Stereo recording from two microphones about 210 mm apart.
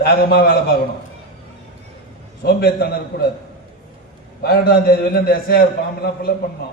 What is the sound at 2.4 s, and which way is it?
Speech, 50° left (ahead or behind).